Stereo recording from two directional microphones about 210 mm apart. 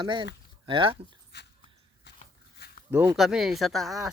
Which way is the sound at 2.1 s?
55° left (ahead or behind).